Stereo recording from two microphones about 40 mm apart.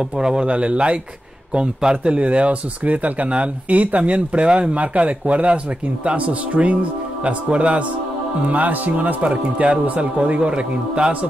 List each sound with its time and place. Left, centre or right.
0.2 s speech: centre
0.5 s speech: right
2.0 s speech: right